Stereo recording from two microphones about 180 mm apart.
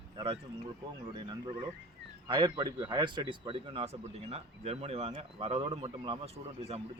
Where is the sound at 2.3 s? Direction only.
25° right (ahead or behind).